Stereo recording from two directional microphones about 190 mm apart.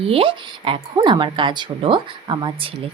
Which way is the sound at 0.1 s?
30° right (ahead or behind).